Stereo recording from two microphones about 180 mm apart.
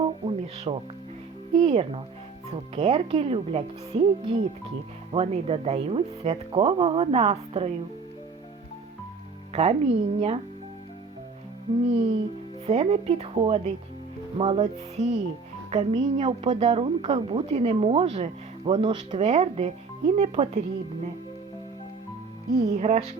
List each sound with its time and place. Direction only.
0.0 s music: 30° right (ahead or behind)
1.5 s speech: 30° right (ahead or behind)
9.5 s speech: 35° right (ahead or behind)
11.9 s a woman's voice: 35° right (ahead or behind)
19.2 s speech: 40° right (ahead or behind)
22.6 s speech: 35° right (ahead or behind)